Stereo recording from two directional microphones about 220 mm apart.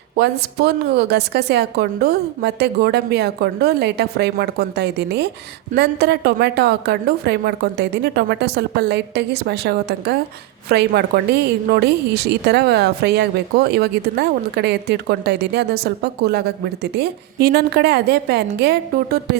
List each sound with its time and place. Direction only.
0.2 s a woman's voice: 50° right (ahead or behind)